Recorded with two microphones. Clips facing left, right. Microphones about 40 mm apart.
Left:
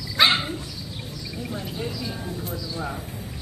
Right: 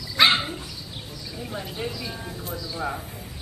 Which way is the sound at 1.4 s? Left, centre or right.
Centre.